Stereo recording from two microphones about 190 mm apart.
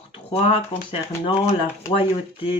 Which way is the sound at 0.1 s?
30° left (ahead or behind).